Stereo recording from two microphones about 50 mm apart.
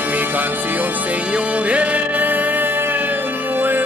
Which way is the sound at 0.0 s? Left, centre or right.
Right.